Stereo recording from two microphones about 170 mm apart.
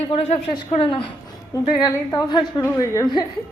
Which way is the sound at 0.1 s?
35° left (ahead or behind).